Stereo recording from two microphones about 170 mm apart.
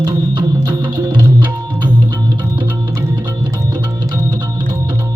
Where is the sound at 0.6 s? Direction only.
20° right (ahead or behind).